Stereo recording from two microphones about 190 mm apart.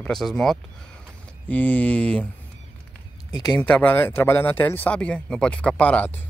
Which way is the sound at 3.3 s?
20° left (ahead or behind).